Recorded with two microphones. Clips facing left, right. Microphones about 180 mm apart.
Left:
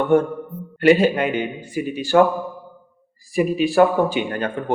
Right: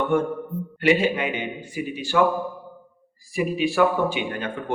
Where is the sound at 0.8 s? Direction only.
45° left (ahead or behind).